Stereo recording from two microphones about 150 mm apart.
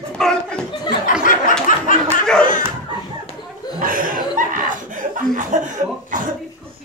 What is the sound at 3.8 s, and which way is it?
Chuckle, 70° right (ahead or behind).